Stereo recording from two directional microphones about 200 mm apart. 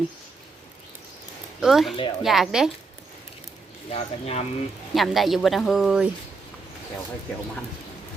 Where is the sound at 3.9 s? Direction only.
30° left (ahead or behind).